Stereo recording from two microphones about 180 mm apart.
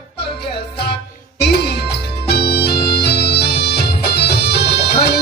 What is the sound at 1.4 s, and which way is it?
Music, 65° left (ahead or behind).